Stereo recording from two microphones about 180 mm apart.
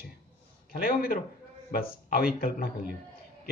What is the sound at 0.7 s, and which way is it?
A man's voice, 55° left (ahead or behind).